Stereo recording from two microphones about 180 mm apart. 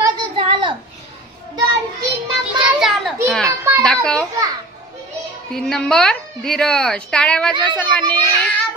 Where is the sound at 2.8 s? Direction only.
Centre (ahead or behind).